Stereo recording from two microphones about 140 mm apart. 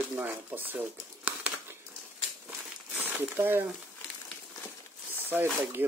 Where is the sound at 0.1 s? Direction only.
15° right (ahead or behind).